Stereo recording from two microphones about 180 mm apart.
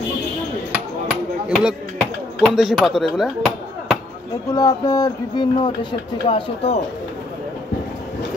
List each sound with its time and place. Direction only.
1.5 s speech: 5° right (ahead or behind)
2.0 s chop: centre (ahead or behind)
4.5 s speech: 20° left (ahead or behind)